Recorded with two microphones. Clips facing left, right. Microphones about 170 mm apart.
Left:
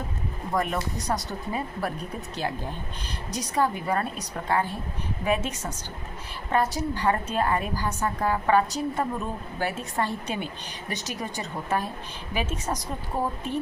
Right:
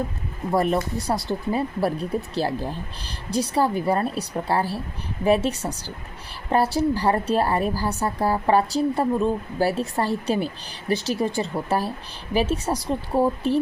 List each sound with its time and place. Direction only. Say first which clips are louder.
0.5 s a woman's voice: right 6 dB; 35° right (ahead or behind)